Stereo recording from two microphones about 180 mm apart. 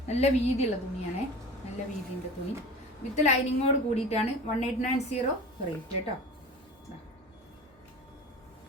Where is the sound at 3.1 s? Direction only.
40° left (ahead or behind).